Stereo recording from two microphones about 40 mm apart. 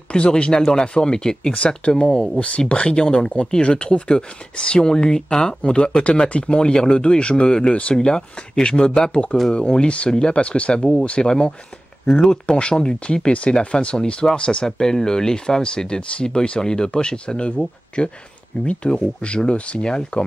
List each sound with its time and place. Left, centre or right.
0.1 s speech: left
0.6 s speech: centre
0.9 s speech: centre
2.3 s speech: left